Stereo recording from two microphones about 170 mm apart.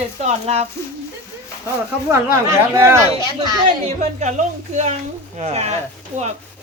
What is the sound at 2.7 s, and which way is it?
Speech, 20° right (ahead or behind).